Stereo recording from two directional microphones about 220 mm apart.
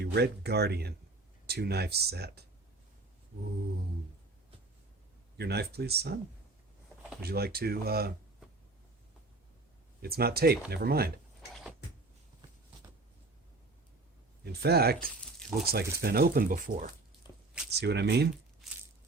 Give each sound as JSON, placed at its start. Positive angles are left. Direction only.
{"t": 0.0, "sound": "speech", "side_deg": -50}
{"t": 5.4, "sound": "speech", "side_deg": -50}
{"t": 7.2, "sound": "speech", "side_deg": -45}
{"t": 10.0, "sound": "speech", "side_deg": -45}
{"t": 14.4, "sound": "speech", "side_deg": -45}
{"t": 17.2, "sound": "a sound", "side_deg": 20}
{"t": 17.7, "sound": "speech", "side_deg": -50}